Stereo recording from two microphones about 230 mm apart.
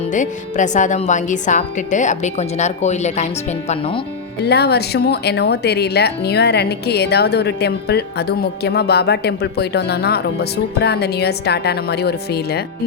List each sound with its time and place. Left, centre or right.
0.1 s a woman's voice: left
4.4 s speech: left